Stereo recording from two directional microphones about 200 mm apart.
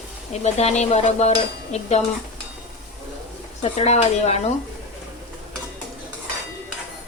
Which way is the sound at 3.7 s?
30° left (ahead or behind).